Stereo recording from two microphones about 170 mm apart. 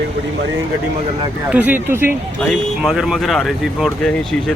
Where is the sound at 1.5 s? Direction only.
10° right (ahead or behind).